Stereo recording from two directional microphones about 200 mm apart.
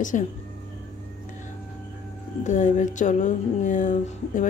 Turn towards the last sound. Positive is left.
turn(degrees=40)  # may be behind; listen again after turning